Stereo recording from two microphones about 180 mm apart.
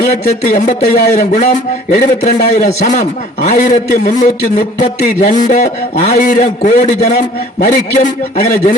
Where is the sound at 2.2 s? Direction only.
45° left (ahead or behind).